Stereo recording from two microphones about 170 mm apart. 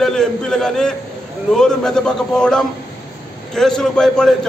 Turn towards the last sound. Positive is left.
turn(degrees=5)  # may be behind; listen again after turning